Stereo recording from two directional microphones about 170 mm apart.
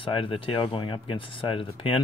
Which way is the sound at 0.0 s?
30° left (ahead or behind).